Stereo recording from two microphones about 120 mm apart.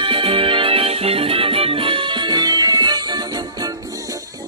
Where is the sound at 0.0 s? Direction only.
50° right (ahead or behind).